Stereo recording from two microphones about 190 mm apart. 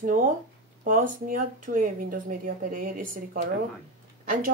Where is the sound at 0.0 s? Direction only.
45° right (ahead or behind).